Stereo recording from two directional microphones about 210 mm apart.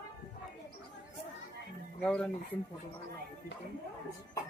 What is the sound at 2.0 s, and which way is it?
Speech, 5° left (ahead or behind).